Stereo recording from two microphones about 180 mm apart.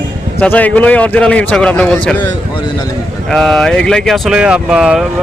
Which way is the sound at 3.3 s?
Centre (ahead or behind).